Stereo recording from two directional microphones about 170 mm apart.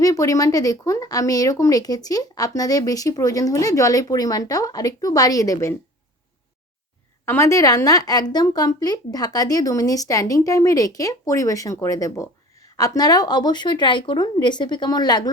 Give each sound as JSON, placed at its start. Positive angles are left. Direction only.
{"t": 0.0, "sound": "speech", "side_deg": 20}
{"t": 7.3, "sound": "speech", "side_deg": 15}